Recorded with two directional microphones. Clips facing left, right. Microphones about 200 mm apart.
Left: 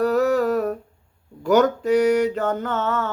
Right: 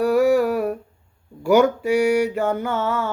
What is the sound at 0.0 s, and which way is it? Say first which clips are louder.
Humming: right 2 dB; 10° right (ahead or behind).